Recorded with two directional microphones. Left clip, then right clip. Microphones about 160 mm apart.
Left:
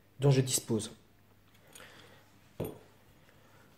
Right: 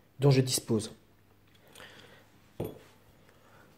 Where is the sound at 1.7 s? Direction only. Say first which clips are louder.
Right 3 dB; 30° right (ahead or behind).